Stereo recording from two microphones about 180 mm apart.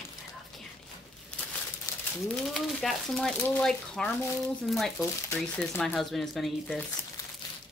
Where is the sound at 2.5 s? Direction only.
Centre (ahead or behind).